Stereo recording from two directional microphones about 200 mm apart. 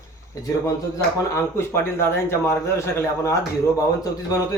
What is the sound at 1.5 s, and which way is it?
A man's voice, 10° left (ahead or behind).